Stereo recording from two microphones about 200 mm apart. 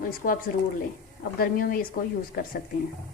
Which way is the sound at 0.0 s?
45° left (ahead or behind).